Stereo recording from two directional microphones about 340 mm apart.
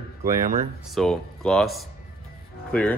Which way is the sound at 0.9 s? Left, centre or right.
Centre.